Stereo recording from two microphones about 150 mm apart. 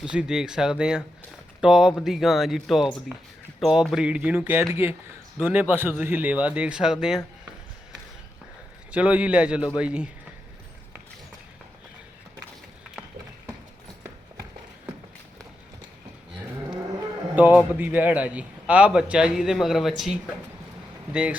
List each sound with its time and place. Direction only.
0.0 s a man's voice: 5° right (ahead or behind)
8.9 s a man's voice: 10° right (ahead or behind)
17.3 s a man's voice: 10° right (ahead or behind)